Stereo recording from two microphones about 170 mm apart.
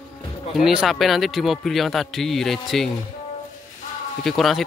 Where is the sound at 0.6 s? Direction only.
Centre (ahead or behind).